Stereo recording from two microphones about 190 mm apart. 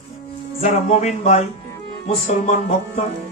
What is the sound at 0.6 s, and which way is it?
A man's voice, 35° left (ahead or behind).